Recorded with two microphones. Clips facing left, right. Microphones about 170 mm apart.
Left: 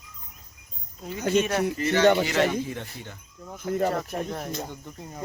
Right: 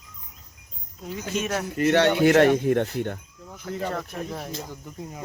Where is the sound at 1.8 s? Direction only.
65° right (ahead or behind).